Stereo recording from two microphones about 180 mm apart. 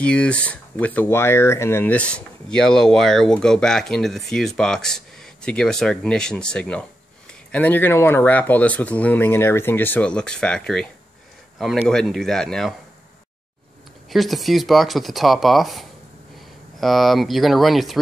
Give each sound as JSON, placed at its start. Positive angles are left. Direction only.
{"t": 0.0, "sound": "speech", "side_deg": 5}
{"t": 14.0, "sound": "speech", "side_deg": 0}